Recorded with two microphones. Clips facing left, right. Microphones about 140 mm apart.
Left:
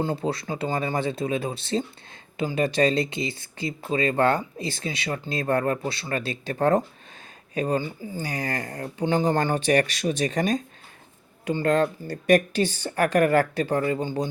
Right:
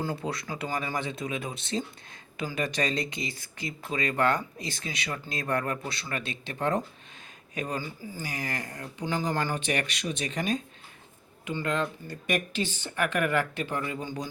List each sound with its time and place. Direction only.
0.0 s speech: 25° left (ahead or behind)